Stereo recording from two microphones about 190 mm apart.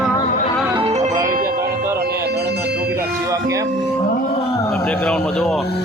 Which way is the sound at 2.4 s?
55° right (ahead or behind).